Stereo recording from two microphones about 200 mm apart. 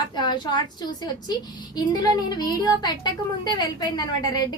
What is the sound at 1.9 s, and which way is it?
A woman's voice, 20° left (ahead or behind).